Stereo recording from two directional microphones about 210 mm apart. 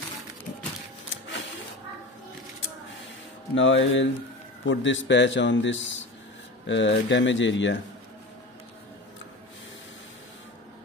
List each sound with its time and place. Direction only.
1.1 s music: 65° left (ahead or behind)
3.5 s a man's voice: 65° left (ahead or behind)